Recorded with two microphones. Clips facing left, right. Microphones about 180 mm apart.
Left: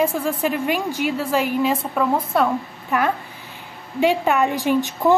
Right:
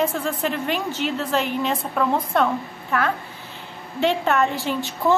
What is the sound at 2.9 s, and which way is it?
A woman's voice, 15° left (ahead or behind).